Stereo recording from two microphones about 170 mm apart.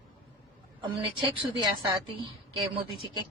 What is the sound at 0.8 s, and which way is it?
Speech, 30° right (ahead or behind).